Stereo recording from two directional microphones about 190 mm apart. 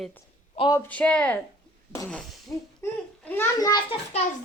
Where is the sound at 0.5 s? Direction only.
25° left (ahead or behind).